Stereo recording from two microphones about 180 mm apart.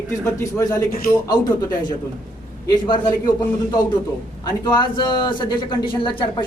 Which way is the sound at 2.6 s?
25° left (ahead or behind).